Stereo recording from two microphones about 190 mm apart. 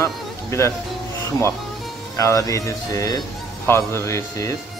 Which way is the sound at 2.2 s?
15° left (ahead or behind).